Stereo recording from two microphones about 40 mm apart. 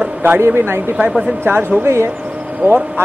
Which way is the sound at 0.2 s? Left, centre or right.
Right.